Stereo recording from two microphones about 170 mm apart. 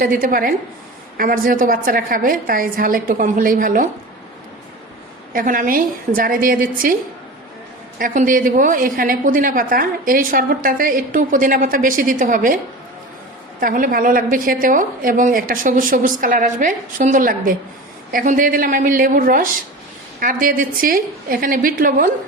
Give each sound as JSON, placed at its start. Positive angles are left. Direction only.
{"t": 0.0, "sound": "a woman's voice", "side_deg": -55}
{"t": 5.3, "sound": "a woman's voice", "side_deg": -55}
{"t": 7.9, "sound": "a woman's voice", "side_deg": -55}
{"t": 13.6, "sound": "a woman's voice", "side_deg": -55}